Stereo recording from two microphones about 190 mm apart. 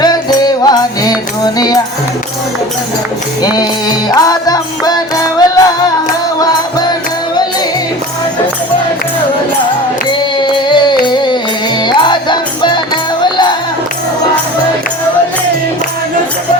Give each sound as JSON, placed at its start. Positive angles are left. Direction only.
{"t": 0.0, "sound": "music", "side_deg": 20}
{"t": 3.4, "sound": "music", "side_deg": 20}
{"t": 10.1, "sound": "music", "side_deg": 25}